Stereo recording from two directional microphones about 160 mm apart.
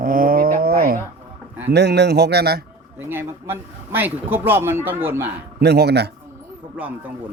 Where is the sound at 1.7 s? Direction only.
90° right.